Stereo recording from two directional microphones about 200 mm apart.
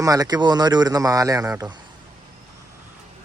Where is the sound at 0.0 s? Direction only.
20° right (ahead or behind).